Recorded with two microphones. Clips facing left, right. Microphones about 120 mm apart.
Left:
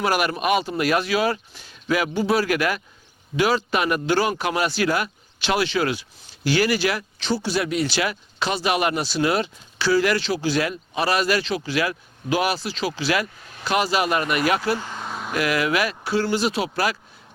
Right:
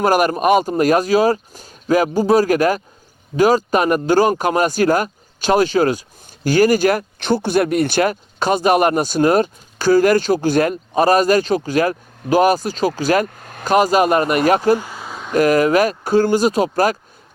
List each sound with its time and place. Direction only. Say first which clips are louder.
0.0 s speech: right 7 dB; 45° right (ahead or behind)
14.8 s a sound: right 1 dB; 5° right (ahead or behind)
15.3 s speech: right 9 dB; 45° right (ahead or behind)